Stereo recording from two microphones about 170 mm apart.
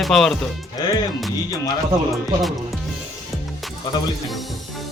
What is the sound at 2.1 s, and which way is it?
Speech, centre (ahead or behind).